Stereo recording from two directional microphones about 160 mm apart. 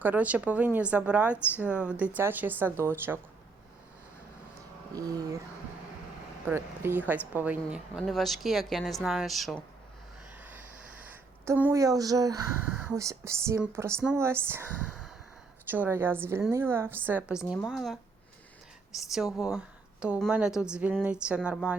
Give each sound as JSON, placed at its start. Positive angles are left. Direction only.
{"t": 0.0, "sound": "speech", "side_deg": -10}
{"t": 4.9, "sound": "speech", "side_deg": -20}
{"t": 6.4, "sound": "speech", "side_deg": -15}
{"t": 11.1, "sound": "speech", "side_deg": -10}
{"t": 12.6, "sound": "speech", "side_deg": -10}